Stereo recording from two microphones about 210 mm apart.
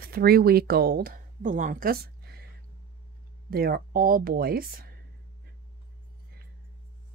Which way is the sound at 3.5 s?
45° right (ahead or behind).